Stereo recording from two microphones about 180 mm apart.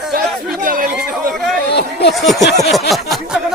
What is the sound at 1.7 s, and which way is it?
Speech, 65° left (ahead or behind).